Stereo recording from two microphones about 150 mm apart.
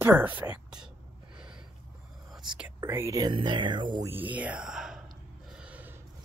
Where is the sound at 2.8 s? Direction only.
20° right (ahead or behind).